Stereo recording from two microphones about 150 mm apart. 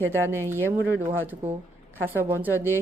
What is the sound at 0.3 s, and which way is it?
A woman's voice, 15° right (ahead or behind).